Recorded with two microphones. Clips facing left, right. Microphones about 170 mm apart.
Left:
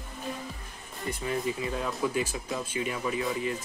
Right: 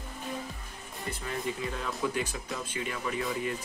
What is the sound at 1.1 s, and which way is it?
Speech, 10° left (ahead or behind).